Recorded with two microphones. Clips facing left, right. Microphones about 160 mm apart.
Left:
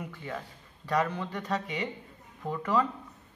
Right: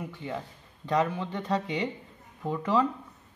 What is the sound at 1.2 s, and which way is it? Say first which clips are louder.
Speech: right 3 dB; 25° right (ahead or behind).